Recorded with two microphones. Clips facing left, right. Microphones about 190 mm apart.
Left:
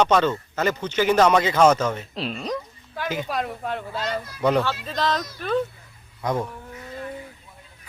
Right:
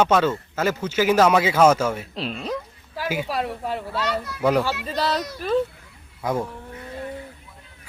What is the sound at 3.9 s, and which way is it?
Speech, 70° right (ahead or behind).